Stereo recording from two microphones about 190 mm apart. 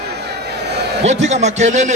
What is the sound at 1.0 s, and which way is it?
Speech, 35° right (ahead or behind).